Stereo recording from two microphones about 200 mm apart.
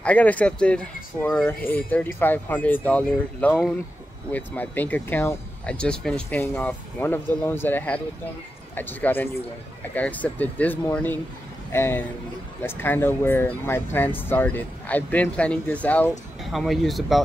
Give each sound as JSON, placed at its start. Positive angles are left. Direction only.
{"t": 0.0, "sound": "speech", "side_deg": 5}